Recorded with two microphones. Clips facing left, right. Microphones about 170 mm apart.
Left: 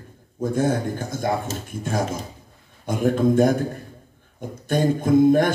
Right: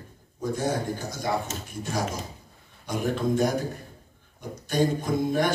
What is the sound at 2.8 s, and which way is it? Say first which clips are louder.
Speech: left 7 dB; 50° left (ahead or behind).